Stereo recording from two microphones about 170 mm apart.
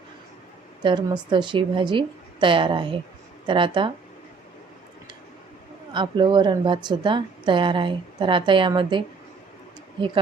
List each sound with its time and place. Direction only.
0.8 s a woman's voice: 25° right (ahead or behind)
5.9 s a woman's voice: 25° right (ahead or behind)